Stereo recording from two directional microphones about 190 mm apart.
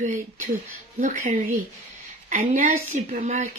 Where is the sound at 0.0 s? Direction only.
40° right (ahead or behind).